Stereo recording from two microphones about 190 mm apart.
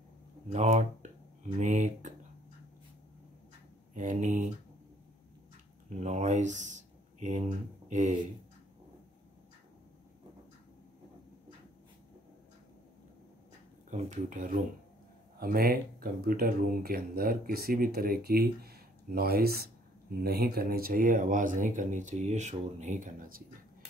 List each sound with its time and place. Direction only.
0.5 s speech: 35° right (ahead or behind)
3.9 s speech: 40° right (ahead or behind)
5.9 s speech: 40° right (ahead or behind)
13.8 s speech: 40° right (ahead or behind)